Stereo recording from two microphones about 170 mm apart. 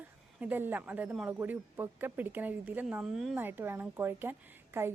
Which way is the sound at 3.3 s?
10° right (ahead or behind).